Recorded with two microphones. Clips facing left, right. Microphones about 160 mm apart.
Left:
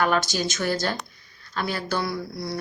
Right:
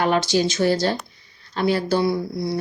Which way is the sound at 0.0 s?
25° right (ahead or behind).